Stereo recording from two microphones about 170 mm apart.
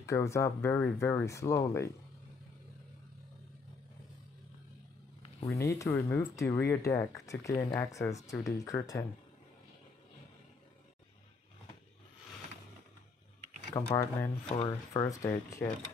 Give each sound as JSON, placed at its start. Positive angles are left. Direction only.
{"t": 0.0, "sound": "speech", "side_deg": 15}
{"t": 5.5, "sound": "speech", "side_deg": 20}
{"t": 13.7, "sound": "speech", "side_deg": 15}
{"t": 14.5, "sound": "speech", "side_deg": 30}
{"t": 15.0, "sound": "speech", "side_deg": 20}